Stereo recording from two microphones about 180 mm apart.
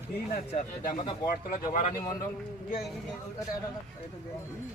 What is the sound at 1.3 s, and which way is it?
Speech, 50° left (ahead or behind).